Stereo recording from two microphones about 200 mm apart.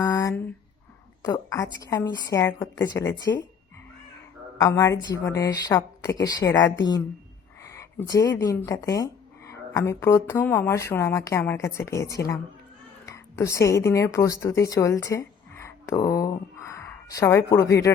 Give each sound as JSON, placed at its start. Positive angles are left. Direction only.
{"t": 0.0, "sound": "a sound", "side_deg": 15}
{"t": 1.2, "sound": "a woman's voice", "side_deg": 15}
{"t": 4.6, "sound": "speech", "side_deg": 15}
{"t": 7.7, "sound": "a woman's voice", "side_deg": 15}